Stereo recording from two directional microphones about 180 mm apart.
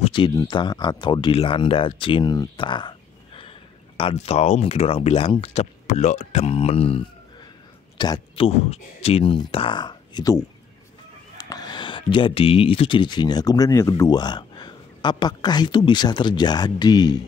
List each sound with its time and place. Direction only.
0.0 s a sound: 30° left (ahead or behind)
0.3 s speech: 20° left (ahead or behind)
8.0 s speech: 25° left (ahead or behind)
11.4 s speech: 20° left (ahead or behind)